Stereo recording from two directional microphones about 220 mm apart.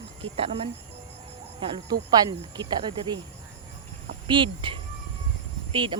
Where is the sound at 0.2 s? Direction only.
25° right (ahead or behind).